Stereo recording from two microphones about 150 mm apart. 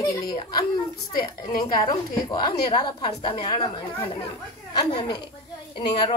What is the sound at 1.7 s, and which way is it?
A woman's voice, 30° left (ahead or behind).